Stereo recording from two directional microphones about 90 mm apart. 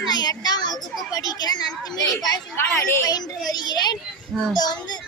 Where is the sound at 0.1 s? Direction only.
50° left (ahead or behind).